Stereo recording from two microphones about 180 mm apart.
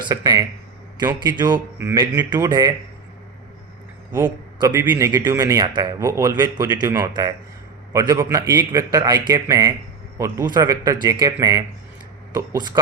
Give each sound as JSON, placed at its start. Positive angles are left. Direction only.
{"t": 0.1, "sound": "a man's voice", "side_deg": -20}
{"t": 1.5, "sound": "a man's voice", "side_deg": -15}
{"t": 4.1, "sound": "a man's voice", "side_deg": -20}